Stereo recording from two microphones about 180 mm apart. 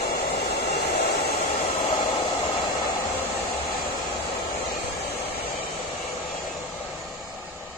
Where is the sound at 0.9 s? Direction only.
60° left (ahead or behind).